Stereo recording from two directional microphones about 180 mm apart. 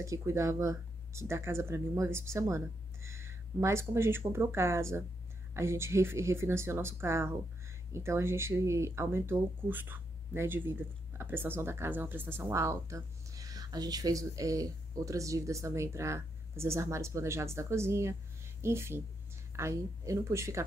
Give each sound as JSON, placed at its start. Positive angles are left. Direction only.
{"t": 0.0, "sound": "speech", "side_deg": -15}